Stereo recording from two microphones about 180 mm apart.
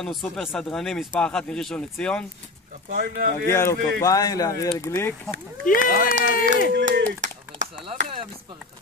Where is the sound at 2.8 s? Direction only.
55° right (ahead or behind).